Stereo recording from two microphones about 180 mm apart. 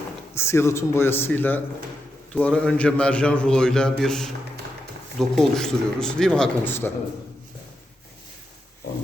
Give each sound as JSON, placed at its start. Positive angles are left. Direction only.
{"t": 0.3, "sound": "a man's voice", "side_deg": 15}
{"t": 5.3, "sound": "a man's voice", "side_deg": 0}